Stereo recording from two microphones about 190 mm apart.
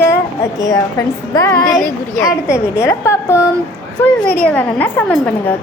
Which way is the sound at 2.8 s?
15° left (ahead or behind).